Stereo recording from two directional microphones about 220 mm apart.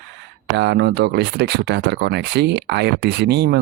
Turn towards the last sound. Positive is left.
turn(degrees=-50)  # may be behind; listen again after turning